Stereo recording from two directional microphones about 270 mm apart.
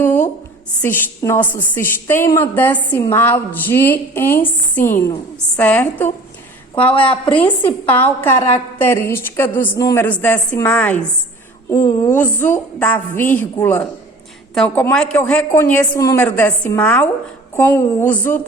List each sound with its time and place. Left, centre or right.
0.0 s a sound: centre
0.8 s a woman's voice: centre
6.9 s a woman's voice: centre
7.6 s a woman's voice: centre